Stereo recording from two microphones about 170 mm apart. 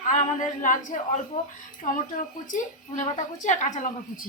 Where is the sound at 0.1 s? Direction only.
50° left (ahead or behind).